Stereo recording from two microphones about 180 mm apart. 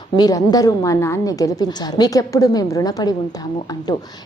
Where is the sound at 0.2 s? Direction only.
20° left (ahead or behind).